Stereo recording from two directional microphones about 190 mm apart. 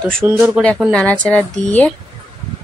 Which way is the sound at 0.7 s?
5° left (ahead or behind).